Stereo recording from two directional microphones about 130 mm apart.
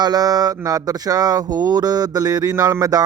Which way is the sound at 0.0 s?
30° right (ahead or behind).